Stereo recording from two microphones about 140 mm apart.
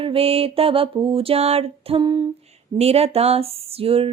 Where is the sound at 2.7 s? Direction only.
45° right (ahead or behind).